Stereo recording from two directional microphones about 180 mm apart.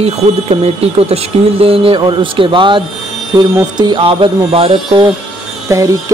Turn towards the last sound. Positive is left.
turn(degrees=-20)  # may be behind; listen again after turning